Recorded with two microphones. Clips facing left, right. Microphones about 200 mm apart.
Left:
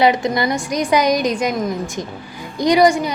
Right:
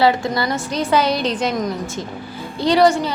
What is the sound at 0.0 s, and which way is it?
A woman's voice, 20° left (ahead or behind).